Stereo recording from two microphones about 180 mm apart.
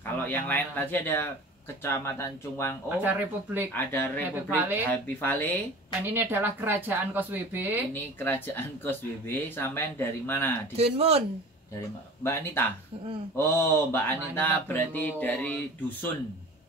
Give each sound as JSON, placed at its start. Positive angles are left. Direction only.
{"t": 0.3, "sound": "speech", "side_deg": 10}
{"t": 3.0, "sound": "speech", "side_deg": -10}
{"t": 3.7, "sound": "speech", "side_deg": 10}
{"t": 4.6, "sound": "speech", "side_deg": -10}
{"t": 4.9, "sound": "speech", "side_deg": 10}
{"t": 6.0, "sound": "speech", "side_deg": -10}
{"t": 7.9, "sound": "speech", "side_deg": 10}
{"t": 10.8, "sound": "speech", "side_deg": -35}
{"t": 12.2, "sound": "speech", "side_deg": 15}